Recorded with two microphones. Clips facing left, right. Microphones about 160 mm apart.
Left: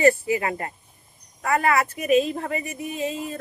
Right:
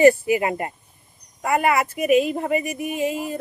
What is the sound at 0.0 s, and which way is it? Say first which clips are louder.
Speech: right 4 dB; 20° right (ahead or behind).